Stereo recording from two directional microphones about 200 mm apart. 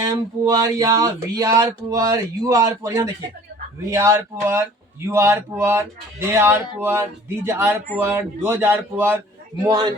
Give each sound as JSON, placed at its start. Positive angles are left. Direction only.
{"t": 0.0, "sound": "speech", "side_deg": -20}
{"t": 9.6, "sound": "a man's voice", "side_deg": -20}